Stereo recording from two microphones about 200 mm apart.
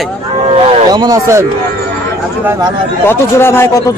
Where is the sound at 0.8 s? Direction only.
20° right (ahead or behind).